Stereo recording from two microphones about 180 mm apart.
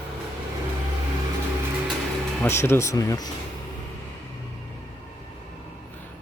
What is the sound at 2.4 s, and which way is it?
Speech, 15° left (ahead or behind).